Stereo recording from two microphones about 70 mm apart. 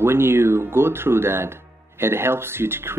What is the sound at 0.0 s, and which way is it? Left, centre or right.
Speech, right.